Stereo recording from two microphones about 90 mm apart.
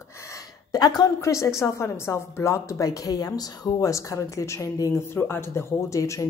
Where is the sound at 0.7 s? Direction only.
50° left (ahead or behind).